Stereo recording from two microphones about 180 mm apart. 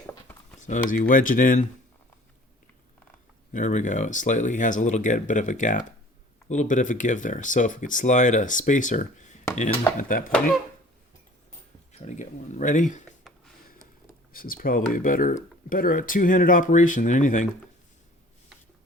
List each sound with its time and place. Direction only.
0.6 s speech: 45° left (ahead or behind)
3.5 s speech: 45° left (ahead or behind)
11.9 s speech: 40° left (ahead or behind)
14.3 s speech: 55° left (ahead or behind)